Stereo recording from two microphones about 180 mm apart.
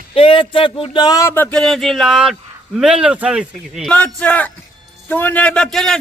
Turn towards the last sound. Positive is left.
turn(degrees=5)  # may be behind; listen again after turning